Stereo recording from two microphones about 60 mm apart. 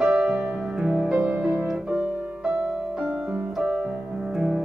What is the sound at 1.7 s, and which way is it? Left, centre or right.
Music, centre.